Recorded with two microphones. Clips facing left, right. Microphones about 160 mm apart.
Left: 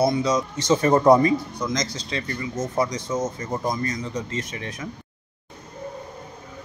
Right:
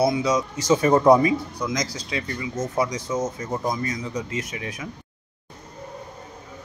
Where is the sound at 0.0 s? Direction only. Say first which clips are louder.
Even; 5° right (ahead or behind).